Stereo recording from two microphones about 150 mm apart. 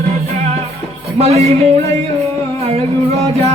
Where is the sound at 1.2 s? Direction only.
45° right (ahead or behind).